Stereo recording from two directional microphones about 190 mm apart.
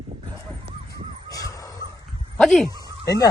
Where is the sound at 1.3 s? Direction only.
20° left (ahead or behind).